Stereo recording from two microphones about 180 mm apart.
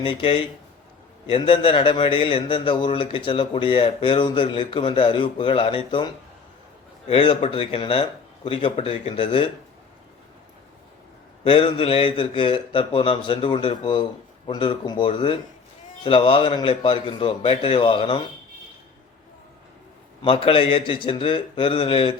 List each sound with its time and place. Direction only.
0.0 s a man's voice: 30° left (ahead or behind)
7.1 s a man's voice: 30° left (ahead or behind)
11.4 s a man's voice: 30° left (ahead or behind)
20.2 s a man's voice: 30° left (ahead or behind)